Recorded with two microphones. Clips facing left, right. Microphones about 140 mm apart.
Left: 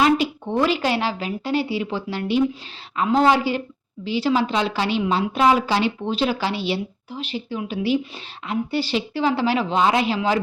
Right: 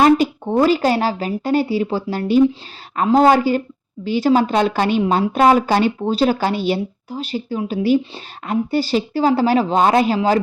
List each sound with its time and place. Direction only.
0.0 s a woman's voice: 45° right (ahead or behind)